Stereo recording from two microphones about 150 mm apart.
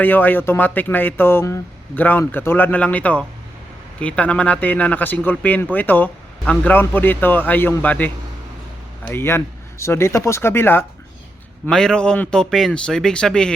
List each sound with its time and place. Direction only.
0.0 s speech: 10° left (ahead or behind)